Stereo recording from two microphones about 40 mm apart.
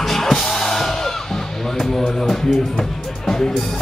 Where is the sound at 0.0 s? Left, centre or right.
Centre.